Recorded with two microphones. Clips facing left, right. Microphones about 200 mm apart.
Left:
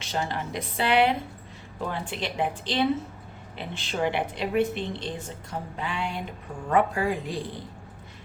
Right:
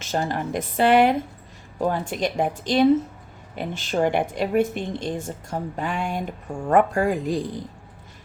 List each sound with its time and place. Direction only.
0.0 s a woman's voice: 45° right (ahead or behind)